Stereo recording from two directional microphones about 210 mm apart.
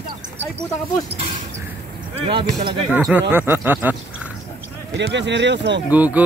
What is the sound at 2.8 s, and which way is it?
Speech, 5° right (ahead or behind).